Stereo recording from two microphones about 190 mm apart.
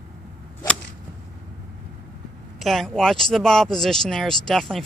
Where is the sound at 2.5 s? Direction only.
Centre (ahead or behind).